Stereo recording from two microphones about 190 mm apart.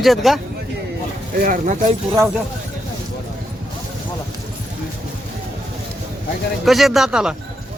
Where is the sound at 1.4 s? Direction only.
45° right (ahead or behind).